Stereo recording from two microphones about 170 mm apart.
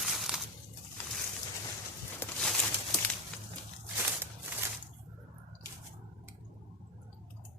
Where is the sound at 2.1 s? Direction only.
5° left (ahead or behind).